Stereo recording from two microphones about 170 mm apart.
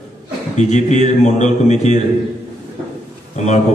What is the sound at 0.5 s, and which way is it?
A man's voice, 45° left (ahead or behind).